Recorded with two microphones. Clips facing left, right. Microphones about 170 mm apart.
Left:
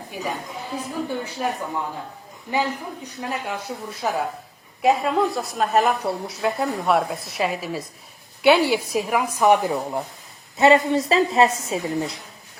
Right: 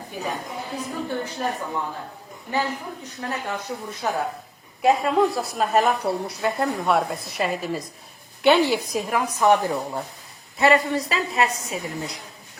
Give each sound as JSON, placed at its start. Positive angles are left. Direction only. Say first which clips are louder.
{"t": 0.8, "sound": "speech", "louder": "left 1 dB", "side_deg": 10}
{"t": 2.5, "sound": "a woman's voice", "louder": "left 2 dB", "side_deg": 15}